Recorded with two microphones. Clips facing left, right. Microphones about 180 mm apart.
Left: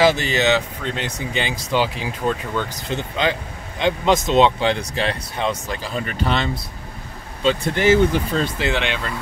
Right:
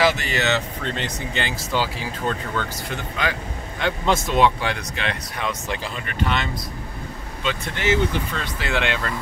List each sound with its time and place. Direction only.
0.0 s speech: 25° left (ahead or behind)